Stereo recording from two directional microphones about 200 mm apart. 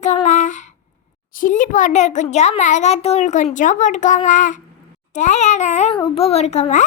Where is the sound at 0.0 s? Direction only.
35° left (ahead or behind).